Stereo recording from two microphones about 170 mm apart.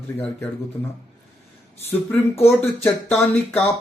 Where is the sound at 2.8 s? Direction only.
10° left (ahead or behind).